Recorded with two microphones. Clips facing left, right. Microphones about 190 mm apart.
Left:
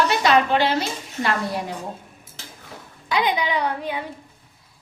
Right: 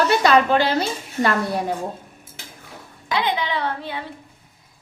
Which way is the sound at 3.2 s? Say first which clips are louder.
Left 2 dB; 15° left (ahead or behind).